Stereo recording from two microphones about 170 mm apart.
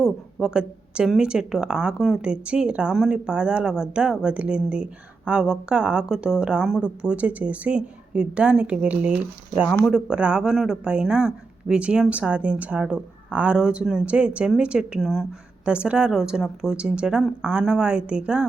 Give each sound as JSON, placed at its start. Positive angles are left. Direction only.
{"t": 0.0, "sound": "a woman's voice", "side_deg": 0}